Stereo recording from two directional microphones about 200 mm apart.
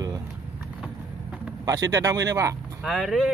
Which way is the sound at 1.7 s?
15° right (ahead or behind).